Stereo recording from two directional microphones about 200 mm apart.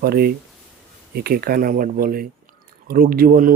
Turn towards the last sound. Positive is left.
turn(degrees=-45)  # may be behind; listen again after turning